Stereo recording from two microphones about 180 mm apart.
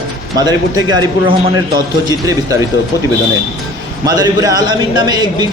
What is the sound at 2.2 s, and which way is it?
Speech, 15° right (ahead or behind).